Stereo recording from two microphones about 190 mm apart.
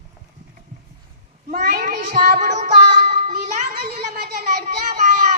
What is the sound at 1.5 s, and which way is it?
Child singing, 50° right (ahead or behind).